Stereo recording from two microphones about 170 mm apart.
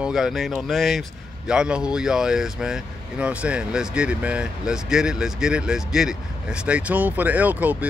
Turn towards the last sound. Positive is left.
turn(degrees=-10)  # may be behind; listen again after turning